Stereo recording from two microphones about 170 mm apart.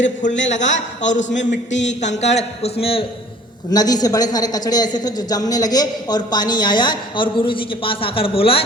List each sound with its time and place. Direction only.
0.0 s a man's voice: 45° left (ahead or behind)
1.7 s a sound: 90° left
2.0 s a man's voice: 40° left (ahead or behind)
3.7 s a man's voice: 25° left (ahead or behind)